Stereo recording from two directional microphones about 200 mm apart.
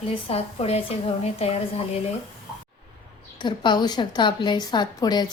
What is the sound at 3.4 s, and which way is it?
A woman's voice, 20° left (ahead or behind).